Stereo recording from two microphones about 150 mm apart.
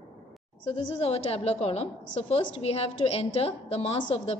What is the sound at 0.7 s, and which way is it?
A woman's voice, 45° left (ahead or behind).